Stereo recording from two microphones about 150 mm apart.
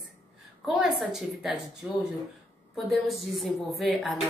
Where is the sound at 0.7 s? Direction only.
Centre (ahead or behind).